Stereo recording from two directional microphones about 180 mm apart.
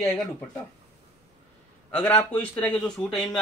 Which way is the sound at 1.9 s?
10° left (ahead or behind).